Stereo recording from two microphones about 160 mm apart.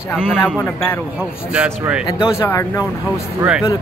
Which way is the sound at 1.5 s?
5° right (ahead or behind).